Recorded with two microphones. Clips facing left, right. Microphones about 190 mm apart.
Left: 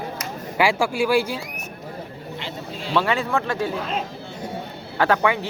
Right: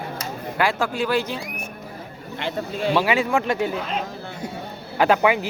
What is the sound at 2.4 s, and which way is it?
Speech, 55° right (ahead or behind).